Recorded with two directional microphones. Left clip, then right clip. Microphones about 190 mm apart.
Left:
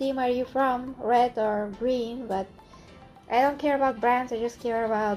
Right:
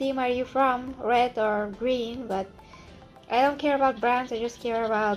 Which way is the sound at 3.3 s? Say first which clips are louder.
Even; centre (ahead or behind).